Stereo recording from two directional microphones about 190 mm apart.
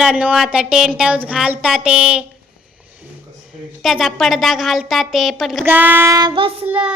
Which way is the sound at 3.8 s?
Centre (ahead or behind).